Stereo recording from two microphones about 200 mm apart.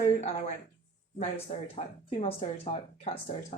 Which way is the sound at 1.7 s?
30° left (ahead or behind).